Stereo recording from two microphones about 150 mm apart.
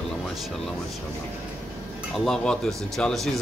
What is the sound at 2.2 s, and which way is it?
Speech, 5° left (ahead or behind).